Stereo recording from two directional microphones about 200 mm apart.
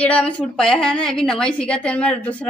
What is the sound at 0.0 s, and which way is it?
A woman's voice, 5° left (ahead or behind).